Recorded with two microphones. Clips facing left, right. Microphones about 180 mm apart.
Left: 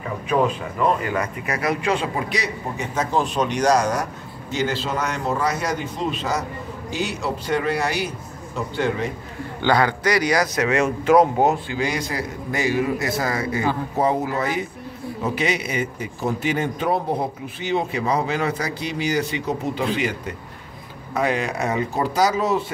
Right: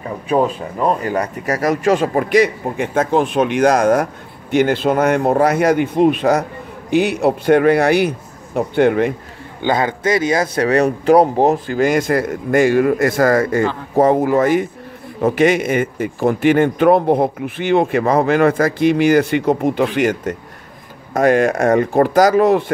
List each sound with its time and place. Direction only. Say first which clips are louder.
1.0 s a man's voice: right 5 dB; 35° right (ahead or behind); by 9.1 s 60° right (ahead or behind)
9.6 s a man's voice: right 2 dB; 20° right (ahead or behind); by 22.7 s 55° right (ahead or behind)